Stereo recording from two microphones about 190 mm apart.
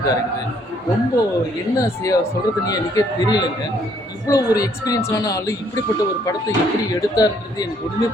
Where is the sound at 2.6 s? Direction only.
20° left (ahead or behind).